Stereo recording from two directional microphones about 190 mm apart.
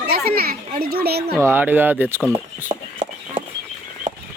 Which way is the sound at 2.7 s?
20° right (ahead or behind).